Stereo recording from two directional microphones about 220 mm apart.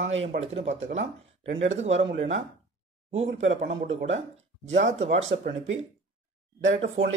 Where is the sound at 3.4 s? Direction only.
35° right (ahead or behind).